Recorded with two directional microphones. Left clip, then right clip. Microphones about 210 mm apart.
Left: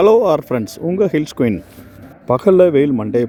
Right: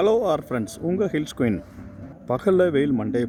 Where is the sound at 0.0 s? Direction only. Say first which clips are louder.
Left 9 dB; 20° left (ahead or behind).